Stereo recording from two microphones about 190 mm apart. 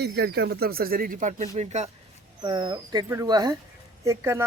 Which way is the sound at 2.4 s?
25° right (ahead or behind).